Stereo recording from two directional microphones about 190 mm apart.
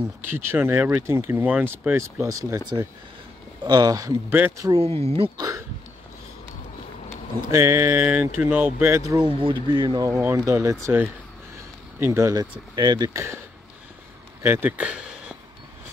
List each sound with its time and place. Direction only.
0.2 s speech: 10° right (ahead or behind)
4.8 s speech: 30° right (ahead or behind)
7.5 s speech: 15° right (ahead or behind)
14.4 s speech: 10° right (ahead or behind)